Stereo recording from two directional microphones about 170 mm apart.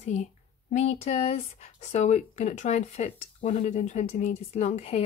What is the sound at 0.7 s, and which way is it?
Speech, 45° left (ahead or behind).